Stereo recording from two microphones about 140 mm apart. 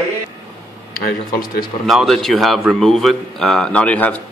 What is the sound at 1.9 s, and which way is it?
A man's voice, centre (ahead or behind).